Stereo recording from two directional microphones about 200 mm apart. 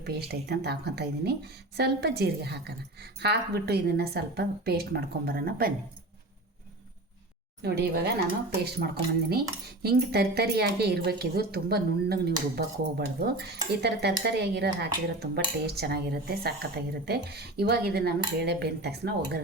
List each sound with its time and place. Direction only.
0.0 s speech: 55° right (ahead or behind)
7.6 s speech: 55° right (ahead or behind)